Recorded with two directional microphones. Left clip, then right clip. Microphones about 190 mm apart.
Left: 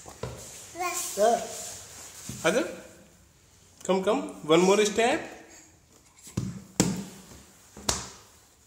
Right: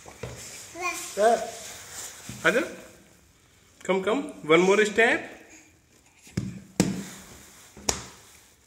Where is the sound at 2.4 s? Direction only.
5° left (ahead or behind).